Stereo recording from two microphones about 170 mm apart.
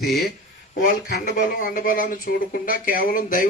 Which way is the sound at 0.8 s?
55° left (ahead or behind).